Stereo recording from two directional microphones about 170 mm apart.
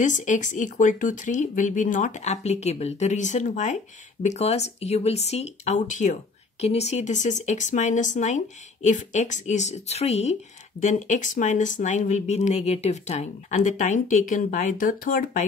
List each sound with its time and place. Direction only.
0.0 s speech: 50° left (ahead or behind)